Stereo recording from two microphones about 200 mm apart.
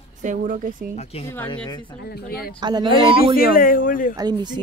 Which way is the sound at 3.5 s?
45° left (ahead or behind).